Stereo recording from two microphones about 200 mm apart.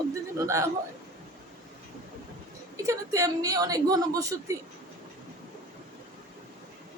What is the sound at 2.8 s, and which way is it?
Speech, 15° right (ahead or behind).